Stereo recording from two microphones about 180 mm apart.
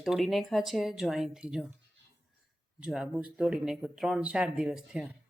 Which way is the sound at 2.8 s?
5° right (ahead or behind).